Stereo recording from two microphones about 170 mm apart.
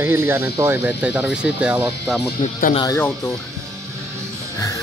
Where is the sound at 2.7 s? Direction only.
25° left (ahead or behind).